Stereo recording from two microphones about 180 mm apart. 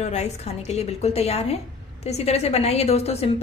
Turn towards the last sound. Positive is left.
turn(degrees=35)  # may be behind; listen again after turning